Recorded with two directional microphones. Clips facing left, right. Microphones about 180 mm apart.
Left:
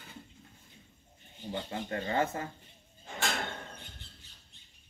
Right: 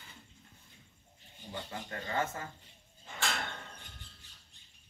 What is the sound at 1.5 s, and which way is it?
Speech, 25° left (ahead or behind).